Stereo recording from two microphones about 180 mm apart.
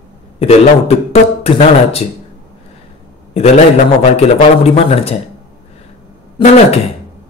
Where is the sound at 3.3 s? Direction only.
35° left (ahead or behind).